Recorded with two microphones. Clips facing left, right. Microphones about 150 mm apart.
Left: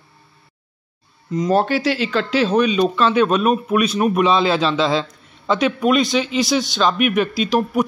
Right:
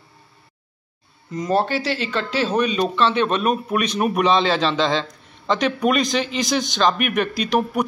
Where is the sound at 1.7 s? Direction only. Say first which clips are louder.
Left 4 dB; 30° right (ahead or behind).